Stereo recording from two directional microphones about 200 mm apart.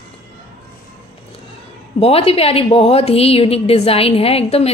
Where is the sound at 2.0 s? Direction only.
30° left (ahead or behind).